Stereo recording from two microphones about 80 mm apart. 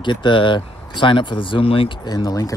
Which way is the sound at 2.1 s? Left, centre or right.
Left.